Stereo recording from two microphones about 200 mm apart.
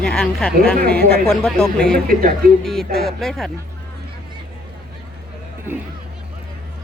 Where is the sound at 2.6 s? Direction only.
Centre (ahead or behind).